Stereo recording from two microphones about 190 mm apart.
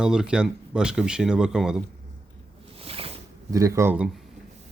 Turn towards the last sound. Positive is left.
turn(degrees=-10)  # may be behind; listen again after turning